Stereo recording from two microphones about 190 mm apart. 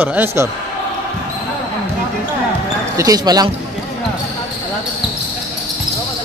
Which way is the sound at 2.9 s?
20° right (ahead or behind).